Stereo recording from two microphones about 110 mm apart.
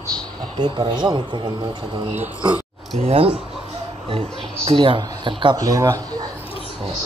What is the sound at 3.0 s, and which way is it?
Speech, 65° right (ahead or behind).